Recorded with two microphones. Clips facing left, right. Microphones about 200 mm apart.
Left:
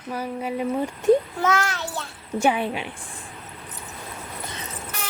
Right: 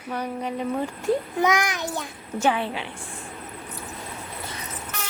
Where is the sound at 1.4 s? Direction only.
15° right (ahead or behind).